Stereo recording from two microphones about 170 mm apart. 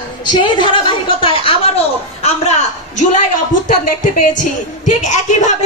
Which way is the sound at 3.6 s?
50° left (ahead or behind).